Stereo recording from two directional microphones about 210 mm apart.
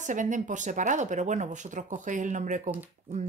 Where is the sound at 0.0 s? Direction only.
35° right (ahead or behind).